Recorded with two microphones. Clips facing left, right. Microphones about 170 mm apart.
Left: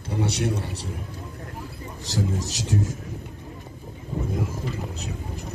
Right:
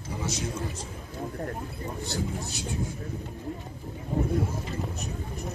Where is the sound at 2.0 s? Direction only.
90° left.